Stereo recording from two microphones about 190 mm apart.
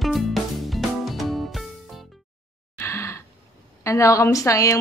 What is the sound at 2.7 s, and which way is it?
Gasp, 15° left (ahead or behind).